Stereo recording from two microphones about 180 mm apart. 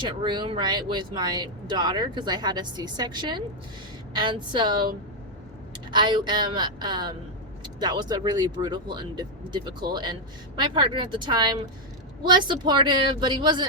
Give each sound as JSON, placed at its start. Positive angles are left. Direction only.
{"t": 0.0, "sound": "speech", "side_deg": -25}
{"t": 5.9, "sound": "speech", "side_deg": -25}